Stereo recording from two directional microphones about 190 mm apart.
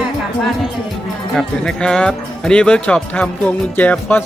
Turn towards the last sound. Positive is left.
turn(degrees=10)  # may be behind; listen again after turning